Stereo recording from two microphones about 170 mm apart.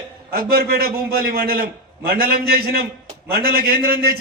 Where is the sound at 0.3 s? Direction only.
60° right (ahead or behind).